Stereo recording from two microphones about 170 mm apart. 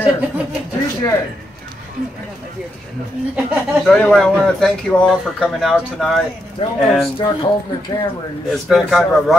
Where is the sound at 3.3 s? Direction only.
5° right (ahead or behind).